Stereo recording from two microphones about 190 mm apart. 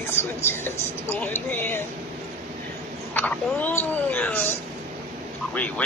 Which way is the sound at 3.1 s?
10° left (ahead or behind).